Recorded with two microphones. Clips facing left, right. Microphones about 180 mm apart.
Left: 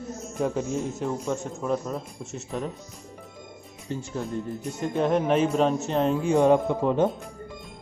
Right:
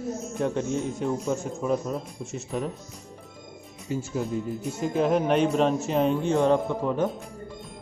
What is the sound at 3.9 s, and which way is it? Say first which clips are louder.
A man's voice: right 3 dB; 5° right (ahead or behind).